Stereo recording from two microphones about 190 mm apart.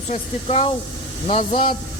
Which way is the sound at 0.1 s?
35° left (ahead or behind).